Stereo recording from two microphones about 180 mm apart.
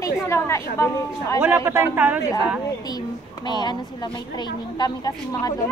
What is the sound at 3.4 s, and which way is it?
A woman's voice, 25° left (ahead or behind).